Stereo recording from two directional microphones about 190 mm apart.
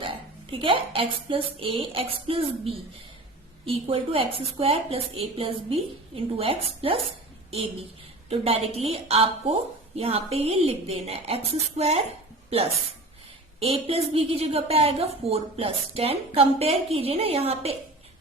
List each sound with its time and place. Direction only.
0.5 s speech: 25° right (ahead or behind)
8.3 s a woman's voice: 30° right (ahead or behind)
13.6 s a woman's voice: 30° right (ahead or behind)